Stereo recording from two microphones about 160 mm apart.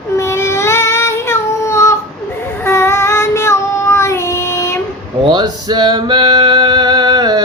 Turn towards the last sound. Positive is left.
turn(degrees=-25)  # may be behind; listen again after turning